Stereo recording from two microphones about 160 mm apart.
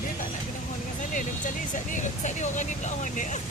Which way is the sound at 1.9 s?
50° left (ahead or behind).